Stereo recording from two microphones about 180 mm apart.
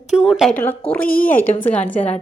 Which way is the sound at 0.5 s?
10° left (ahead or behind).